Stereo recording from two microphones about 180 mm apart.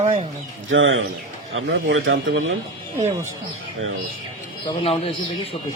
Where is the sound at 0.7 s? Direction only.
90° right.